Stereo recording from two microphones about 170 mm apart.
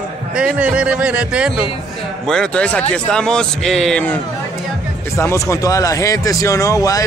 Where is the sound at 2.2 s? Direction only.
5° left (ahead or behind).